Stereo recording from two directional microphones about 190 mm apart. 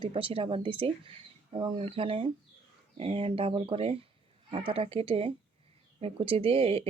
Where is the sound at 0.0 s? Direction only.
25° right (ahead or behind).